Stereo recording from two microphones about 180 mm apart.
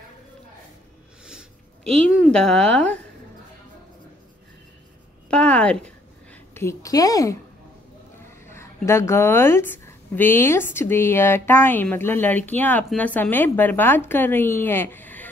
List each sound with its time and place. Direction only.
2.1 s speech: centre (ahead or behind)
5.3 s a woman's voice: 5° left (ahead or behind)
8.5 s a woman's voice: 15° left (ahead or behind)